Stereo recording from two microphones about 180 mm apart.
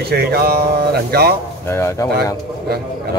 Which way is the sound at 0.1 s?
60° right (ahead or behind).